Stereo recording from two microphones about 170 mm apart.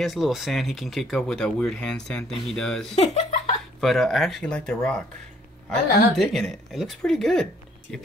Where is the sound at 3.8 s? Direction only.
Centre (ahead or behind).